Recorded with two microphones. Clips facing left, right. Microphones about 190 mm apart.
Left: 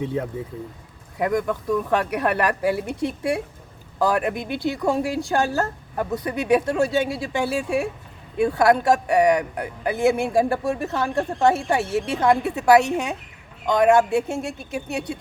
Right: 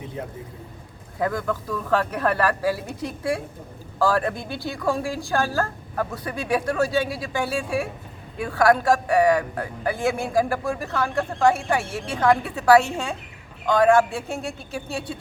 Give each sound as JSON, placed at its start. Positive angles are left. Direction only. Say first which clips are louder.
{"t": 1.2, "sound": "a woman's voice", "louder": "left 3 dB", "side_deg": 15}